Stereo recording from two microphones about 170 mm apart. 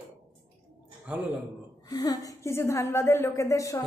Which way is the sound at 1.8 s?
20° left (ahead or behind).